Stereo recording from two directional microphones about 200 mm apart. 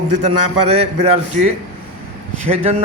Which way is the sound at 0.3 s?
30° right (ahead or behind).